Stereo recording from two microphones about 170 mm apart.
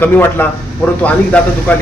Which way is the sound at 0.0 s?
10° left (ahead or behind).